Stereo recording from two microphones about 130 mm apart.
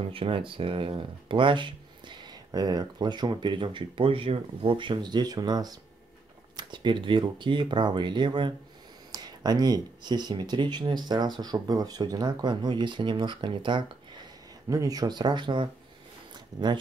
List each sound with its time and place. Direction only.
0.0 s speech: 45° right (ahead or behind)
14.7 s speech: 25° right (ahead or behind)